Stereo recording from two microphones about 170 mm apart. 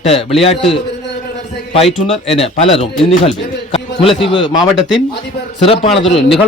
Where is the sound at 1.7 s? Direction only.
35° left (ahead or behind).